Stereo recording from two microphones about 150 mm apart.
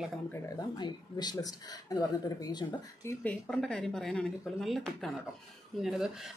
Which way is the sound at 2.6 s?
10° left (ahead or behind).